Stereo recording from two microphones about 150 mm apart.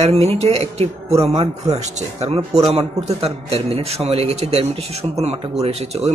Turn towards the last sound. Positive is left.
turn(degrees=-45)  # may be behind; listen again after turning